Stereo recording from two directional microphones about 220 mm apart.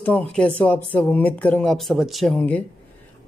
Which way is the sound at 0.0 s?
5° left (ahead or behind).